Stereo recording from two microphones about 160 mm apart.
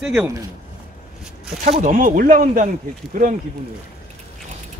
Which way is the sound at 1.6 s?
50° right (ahead or behind).